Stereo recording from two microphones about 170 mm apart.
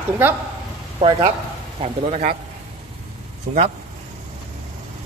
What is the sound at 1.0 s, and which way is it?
Speech, 30° right (ahead or behind).